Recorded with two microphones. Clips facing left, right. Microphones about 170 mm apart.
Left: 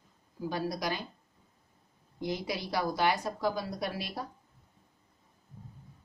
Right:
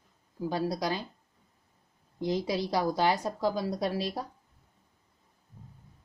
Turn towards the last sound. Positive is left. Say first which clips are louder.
# right 6 dB
turn(degrees=-35)  # may be behind; listen again after turning